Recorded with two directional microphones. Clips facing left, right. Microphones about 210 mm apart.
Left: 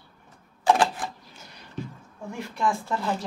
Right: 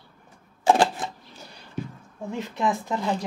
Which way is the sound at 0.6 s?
25° right (ahead or behind).